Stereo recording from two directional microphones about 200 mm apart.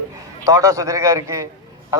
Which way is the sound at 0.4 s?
15° right (ahead or behind).